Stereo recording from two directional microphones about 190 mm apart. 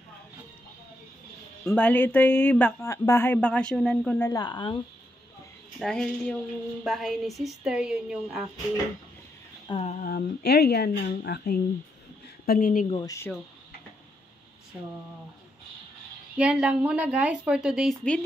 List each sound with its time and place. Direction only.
1.7 s speech: 10° left (ahead or behind)
4.3 s speech: 20° left (ahead or behind)
5.8 s a woman's voice: 5° left (ahead or behind)
9.7 s a sound: 30° left (ahead or behind)
10.0 s a woman's voice: 55° left (ahead or behind)
12.4 s speech: 45° left (ahead or behind)
13.0 s speech: 15° left (ahead or behind)
16.3 s a woman's voice: 5° right (ahead or behind)